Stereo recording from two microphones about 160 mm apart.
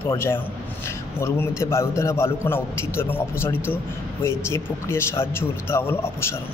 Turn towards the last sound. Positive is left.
turn(degrees=15)  # may be behind; listen again after turning